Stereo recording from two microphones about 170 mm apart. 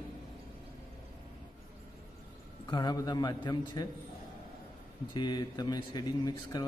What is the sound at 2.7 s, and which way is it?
A man's voice, 25° left (ahead or behind).